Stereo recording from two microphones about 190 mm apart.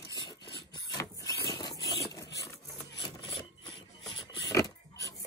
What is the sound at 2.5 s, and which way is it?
Wood, 20° left (ahead or behind).